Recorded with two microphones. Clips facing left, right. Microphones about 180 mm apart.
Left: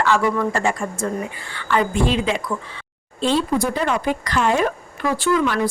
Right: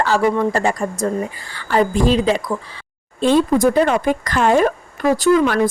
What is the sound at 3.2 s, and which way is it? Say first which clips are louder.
A woman's voice: right 6 dB; 50° right (ahead or behind).